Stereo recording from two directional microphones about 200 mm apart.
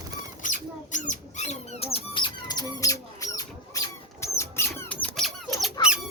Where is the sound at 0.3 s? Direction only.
40° left (ahead or behind).